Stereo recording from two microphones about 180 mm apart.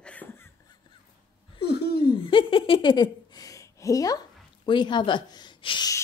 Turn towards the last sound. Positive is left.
turn(degrees=25)  # may be behind; listen again after turning